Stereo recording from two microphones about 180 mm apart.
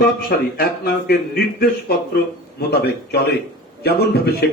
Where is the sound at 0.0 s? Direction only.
55° left (ahead or behind).